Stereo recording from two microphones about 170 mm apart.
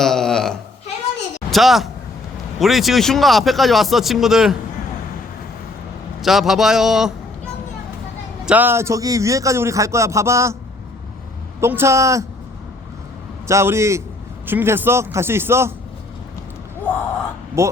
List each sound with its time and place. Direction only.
0.0 s a sound: centre (ahead or behind)
1.5 s a woman's voice: centre (ahead or behind)
6.2 s speech: centre (ahead or behind)
8.4 s a man's voice: 10° right (ahead or behind)
11.6 s a man's voice: 15° right (ahead or behind)
13.5 s a man's voice: 15° right (ahead or behind)
17.6 s a man's voice: 15° right (ahead or behind)